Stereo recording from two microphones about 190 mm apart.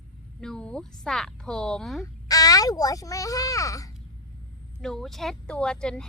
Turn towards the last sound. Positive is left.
turn(degrees=5)  # may be behind; listen again after turning